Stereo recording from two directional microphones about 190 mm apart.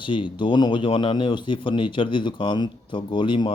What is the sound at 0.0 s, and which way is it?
Speech, 25° left (ahead or behind).